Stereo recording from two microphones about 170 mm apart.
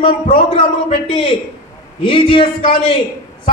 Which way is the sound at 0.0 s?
30° left (ahead or behind).